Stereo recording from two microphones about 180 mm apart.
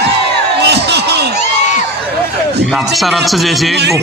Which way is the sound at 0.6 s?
70° right (ahead or behind).